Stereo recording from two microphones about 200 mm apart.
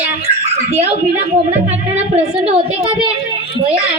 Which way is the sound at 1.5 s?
30° right (ahead or behind).